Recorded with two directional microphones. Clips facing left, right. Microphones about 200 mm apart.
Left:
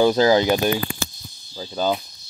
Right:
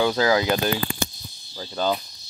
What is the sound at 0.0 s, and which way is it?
Speech, 30° left (ahead or behind).